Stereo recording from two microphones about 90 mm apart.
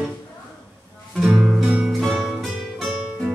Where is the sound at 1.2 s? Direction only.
Centre (ahead or behind).